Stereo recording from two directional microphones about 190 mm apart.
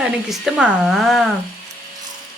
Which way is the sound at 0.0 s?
Centre (ahead or behind).